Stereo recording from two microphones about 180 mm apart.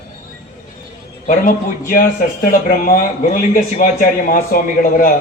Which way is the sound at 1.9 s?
50° left (ahead or behind).